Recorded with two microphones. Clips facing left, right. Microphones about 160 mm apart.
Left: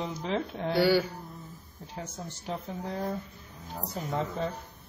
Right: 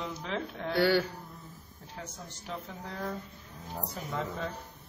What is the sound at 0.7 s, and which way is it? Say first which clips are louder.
Speech: left 2 dB; 10° left (ahead or behind).